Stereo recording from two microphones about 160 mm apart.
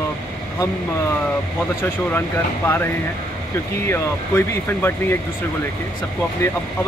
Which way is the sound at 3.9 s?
15° left (ahead or behind).